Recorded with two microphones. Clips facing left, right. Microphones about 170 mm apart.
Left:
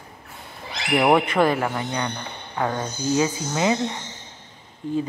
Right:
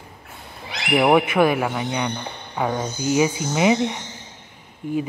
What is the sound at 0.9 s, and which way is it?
Speech, 5° right (ahead or behind).